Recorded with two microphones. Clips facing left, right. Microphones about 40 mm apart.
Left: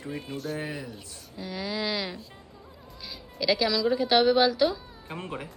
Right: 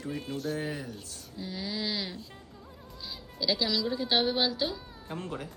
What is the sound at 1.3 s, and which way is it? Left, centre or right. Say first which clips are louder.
Speech: left 4 dB; centre.